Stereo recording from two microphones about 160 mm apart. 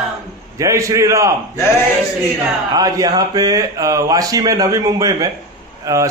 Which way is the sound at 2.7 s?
25° right (ahead or behind).